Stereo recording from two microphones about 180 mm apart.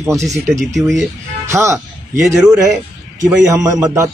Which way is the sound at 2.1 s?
Centre (ahead or behind).